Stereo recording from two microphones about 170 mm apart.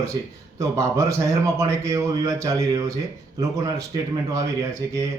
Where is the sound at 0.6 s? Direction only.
15° right (ahead or behind).